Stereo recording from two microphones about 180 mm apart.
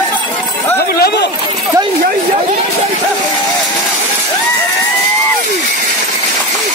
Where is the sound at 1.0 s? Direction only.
65° left (ahead or behind).